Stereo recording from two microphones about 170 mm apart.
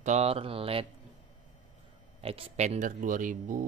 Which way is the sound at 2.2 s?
35° right (ahead or behind).